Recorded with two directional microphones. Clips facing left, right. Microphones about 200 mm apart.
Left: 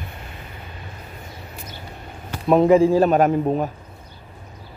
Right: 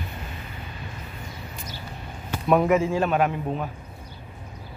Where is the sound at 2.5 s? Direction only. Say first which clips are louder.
Left 6 dB; 30° left (ahead or behind).